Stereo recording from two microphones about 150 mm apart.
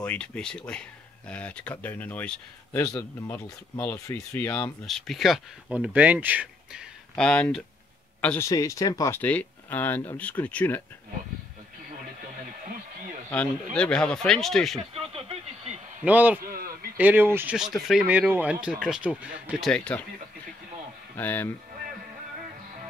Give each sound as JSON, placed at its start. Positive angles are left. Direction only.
{"t": 0.0, "sound": "speech", "side_deg": 10}
{"t": 2.8, "sound": "a man's voice", "side_deg": 20}
{"t": 4.8, "sound": "speech", "side_deg": 0}
{"t": 7.2, "sound": "speech", "side_deg": 5}
{"t": 8.5, "sound": "speech", "side_deg": 20}
{"t": 13.7, "sound": "speech", "side_deg": 5}
{"t": 14.8, "sound": "vehicle", "side_deg": -40}
{"t": 16.0, "sound": "speech", "side_deg": -10}
{"t": 16.4, "sound": "a sound", "side_deg": -75}
{"t": 16.9, "sound": "speech", "side_deg": -10}
{"t": 17.6, "sound": "speech", "side_deg": 0}
{"t": 19.7, "sound": "speech", "side_deg": 10}
{"t": 21.2, "sound": "speech", "side_deg": 10}